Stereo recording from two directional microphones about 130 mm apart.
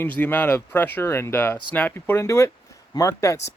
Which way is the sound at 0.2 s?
15° left (ahead or behind).